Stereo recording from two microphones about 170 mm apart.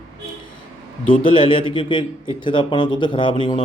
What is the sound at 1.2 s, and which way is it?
A man's voice, 30° left (ahead or behind).